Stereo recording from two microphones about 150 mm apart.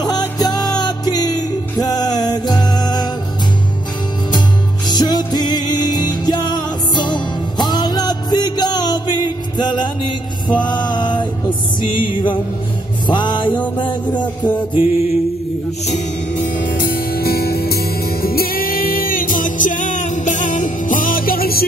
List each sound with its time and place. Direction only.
0.0 s music: 25° left (ahead or behind)
4.8 s music: 25° left (ahead or behind)
15.9 s music: 60° left (ahead or behind); by 21.6 s 85° left